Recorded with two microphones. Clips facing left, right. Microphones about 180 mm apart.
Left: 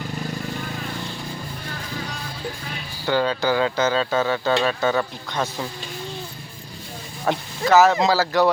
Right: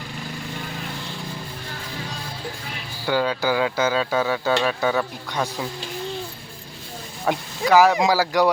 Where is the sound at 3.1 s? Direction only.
10° right (ahead or behind).